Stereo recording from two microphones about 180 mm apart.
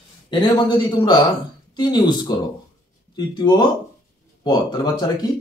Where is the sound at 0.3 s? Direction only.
25° left (ahead or behind).